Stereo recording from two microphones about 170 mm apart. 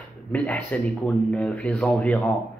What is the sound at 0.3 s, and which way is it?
Speech, 10° left (ahead or behind).